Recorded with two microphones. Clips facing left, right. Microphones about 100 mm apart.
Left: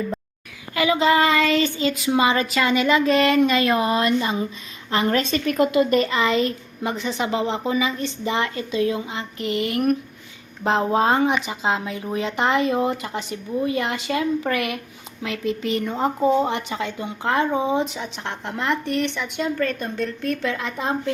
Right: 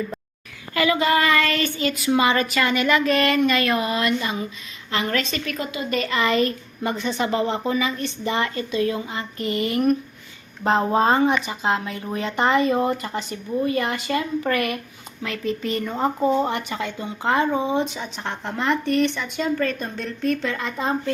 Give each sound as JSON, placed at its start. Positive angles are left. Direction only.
{"t": 0.7, "sound": "a woman's voice", "side_deg": 15}
{"t": 5.5, "sound": "speech", "side_deg": 60}
{"t": 6.1, "sound": "speech", "side_deg": 15}
{"t": 7.6, "sound": "a woman's voice", "side_deg": 15}
{"t": 11.3, "sound": "a woman's voice", "side_deg": 15}